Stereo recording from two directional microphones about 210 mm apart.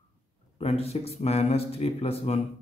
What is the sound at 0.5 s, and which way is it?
A man's voice, 30° left (ahead or behind).